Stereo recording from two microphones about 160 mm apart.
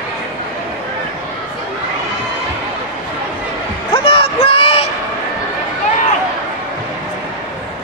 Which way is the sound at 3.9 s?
35° left (ahead or behind).